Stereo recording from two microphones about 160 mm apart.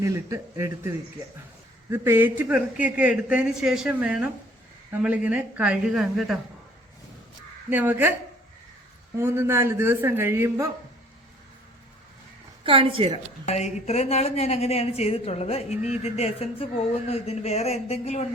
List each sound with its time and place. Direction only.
0.0 s a man's voice: 20° right (ahead or behind); by 6.4 s centre (ahead or behind)
7.7 s a man's voice: 10° right (ahead or behind)
9.1 s a man's voice: 15° right (ahead or behind)
12.6 s a woman's voice: 35° right (ahead or behind)
13.4 s a woman's voice: 45° left (ahead or behind)